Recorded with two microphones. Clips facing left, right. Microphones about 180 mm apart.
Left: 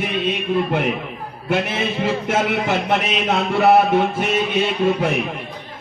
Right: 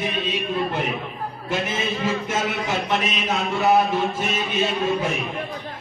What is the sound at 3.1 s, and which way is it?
Speech, 65° left (ahead or behind).